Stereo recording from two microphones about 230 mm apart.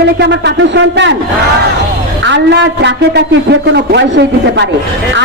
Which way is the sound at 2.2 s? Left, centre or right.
Right.